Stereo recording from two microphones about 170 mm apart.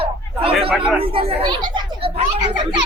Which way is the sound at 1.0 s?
30° right (ahead or behind).